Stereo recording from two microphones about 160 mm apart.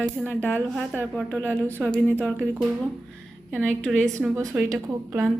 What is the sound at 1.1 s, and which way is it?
Speech, 5° left (ahead or behind).